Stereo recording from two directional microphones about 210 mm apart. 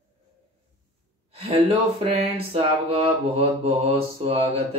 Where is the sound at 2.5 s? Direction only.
25° right (ahead or behind).